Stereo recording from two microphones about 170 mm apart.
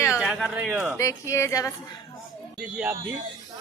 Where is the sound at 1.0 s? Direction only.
20° left (ahead or behind).